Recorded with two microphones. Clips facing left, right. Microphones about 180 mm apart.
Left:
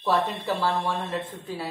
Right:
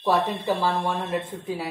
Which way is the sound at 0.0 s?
10° right (ahead or behind).